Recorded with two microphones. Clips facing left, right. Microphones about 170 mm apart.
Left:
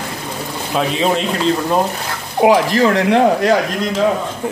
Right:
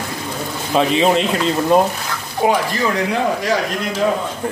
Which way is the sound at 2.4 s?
90° left.